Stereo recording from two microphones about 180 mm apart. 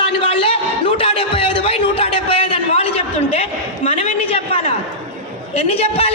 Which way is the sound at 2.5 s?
35° left (ahead or behind).